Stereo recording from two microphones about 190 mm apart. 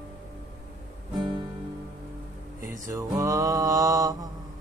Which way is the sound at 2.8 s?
15° right (ahead or behind).